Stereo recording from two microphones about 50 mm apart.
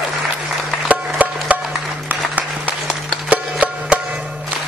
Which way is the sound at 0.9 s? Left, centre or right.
Right.